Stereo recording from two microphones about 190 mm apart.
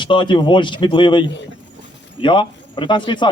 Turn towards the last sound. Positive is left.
turn(degrees=25)  # may be behind; listen again after turning